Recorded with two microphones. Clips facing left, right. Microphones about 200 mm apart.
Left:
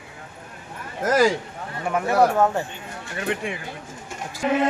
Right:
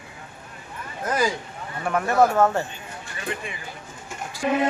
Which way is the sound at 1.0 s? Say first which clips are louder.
Left 6 dB; 90° left.